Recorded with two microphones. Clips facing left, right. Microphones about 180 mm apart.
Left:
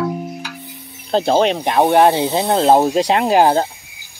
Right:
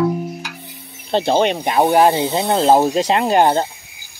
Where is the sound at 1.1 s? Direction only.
Centre (ahead or behind).